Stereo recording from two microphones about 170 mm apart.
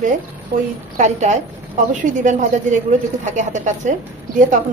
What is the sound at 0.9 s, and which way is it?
A woman's voice, 45° right (ahead or behind).